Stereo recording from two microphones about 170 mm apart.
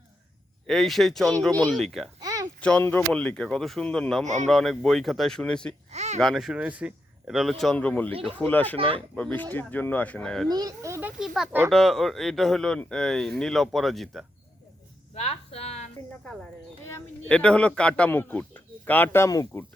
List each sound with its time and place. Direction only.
0.7 s speech: centre (ahead or behind)
2.2 s a sound: 20° right (ahead or behind)
2.6 s speech: 5° left (ahead or behind)
5.9 s speech: 40° right (ahead or behind)
6.1 s speech: centre (ahead or behind)
10.5 s speech: 20° right (ahead or behind)
11.2 s speech: centre (ahead or behind)
15.2 s speech: 40° left (ahead or behind)
17.2 s speech: 5° left (ahead or behind)